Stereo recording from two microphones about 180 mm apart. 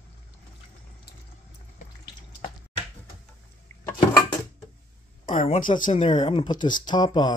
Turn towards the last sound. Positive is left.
turn(degrees=25)  # may be behind; listen again after turning